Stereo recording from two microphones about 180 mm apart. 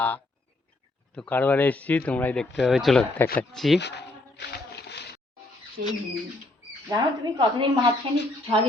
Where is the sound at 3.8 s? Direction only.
70° left (ahead or behind).